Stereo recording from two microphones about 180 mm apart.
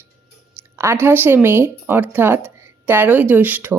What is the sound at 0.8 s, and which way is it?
Speech, 15° right (ahead or behind).